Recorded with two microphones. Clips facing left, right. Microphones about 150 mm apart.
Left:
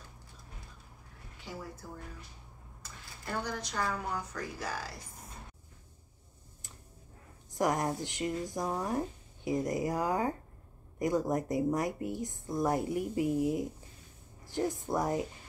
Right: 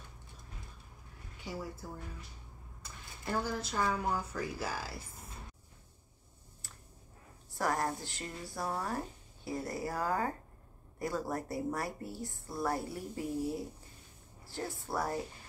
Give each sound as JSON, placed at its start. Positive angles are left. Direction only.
{"t": 3.3, "sound": "a woman's voice", "side_deg": -5}
{"t": 7.5, "sound": "speech", "side_deg": 20}